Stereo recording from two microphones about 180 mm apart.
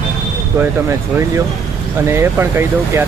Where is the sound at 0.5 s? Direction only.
15° right (ahead or behind).